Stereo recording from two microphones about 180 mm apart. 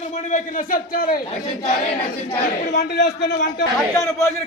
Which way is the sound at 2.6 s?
70° left (ahead or behind).